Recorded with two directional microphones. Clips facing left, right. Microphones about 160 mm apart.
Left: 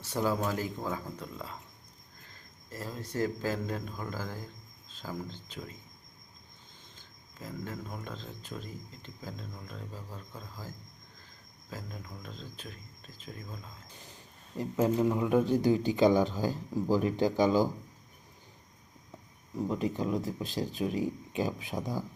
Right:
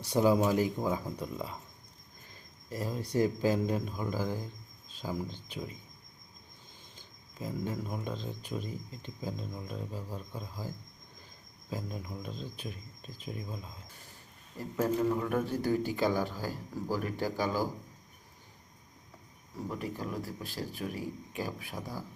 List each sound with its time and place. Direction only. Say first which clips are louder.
0.0 s speech: right 5 dB; 15° right (ahead or behind)
6.9 s speech: right 3 dB; 15° right (ahead or behind)
11.7 s speech: right 5 dB; 20° right (ahead or behind)
14.6 s speech: left 2 dB; 20° left (ahead or behind)
19.6 s speech: left 6 dB; 20° left (ahead or behind)